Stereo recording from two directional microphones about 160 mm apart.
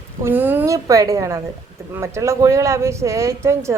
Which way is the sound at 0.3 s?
10° right (ahead or behind).